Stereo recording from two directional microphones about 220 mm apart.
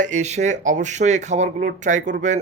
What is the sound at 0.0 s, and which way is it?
Speech, 30° right (ahead or behind).